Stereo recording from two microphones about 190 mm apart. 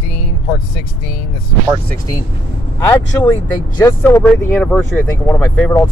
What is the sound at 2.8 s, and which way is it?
Speech, 15° left (ahead or behind).